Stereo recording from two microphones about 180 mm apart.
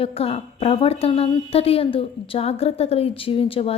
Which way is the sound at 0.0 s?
35° left (ahead or behind).